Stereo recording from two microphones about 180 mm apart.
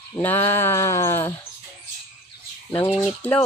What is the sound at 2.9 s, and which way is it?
Speech, 5° right (ahead or behind).